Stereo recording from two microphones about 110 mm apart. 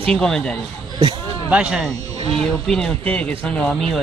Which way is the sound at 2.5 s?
5° left (ahead or behind).